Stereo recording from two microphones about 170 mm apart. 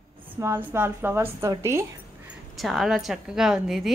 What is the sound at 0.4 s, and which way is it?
A woman's voice, 10° right (ahead or behind).